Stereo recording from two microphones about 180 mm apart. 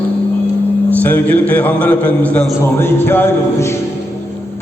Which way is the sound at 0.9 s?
10° left (ahead or behind).